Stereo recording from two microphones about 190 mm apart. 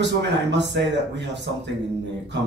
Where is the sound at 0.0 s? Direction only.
65° right (ahead or behind).